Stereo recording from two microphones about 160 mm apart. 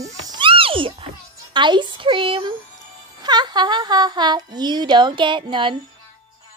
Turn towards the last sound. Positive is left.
turn(degrees=-30)  # may be behind; listen again after turning